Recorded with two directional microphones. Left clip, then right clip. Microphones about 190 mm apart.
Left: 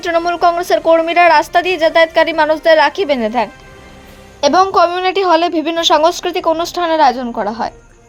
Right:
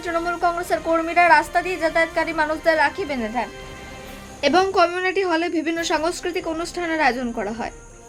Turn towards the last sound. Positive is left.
turn(degrees=20)  # may be behind; listen again after turning